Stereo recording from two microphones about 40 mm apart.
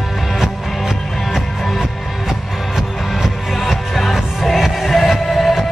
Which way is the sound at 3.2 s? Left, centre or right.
Centre.